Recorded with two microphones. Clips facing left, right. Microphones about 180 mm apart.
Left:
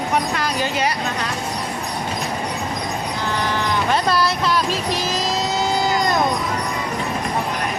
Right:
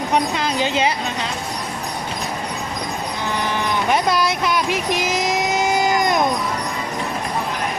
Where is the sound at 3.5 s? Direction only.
15° right (ahead or behind).